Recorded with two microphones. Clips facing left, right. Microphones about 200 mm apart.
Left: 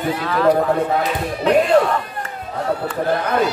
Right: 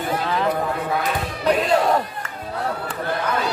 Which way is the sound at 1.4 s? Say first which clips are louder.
Left 4 dB; 40° right (ahead or behind).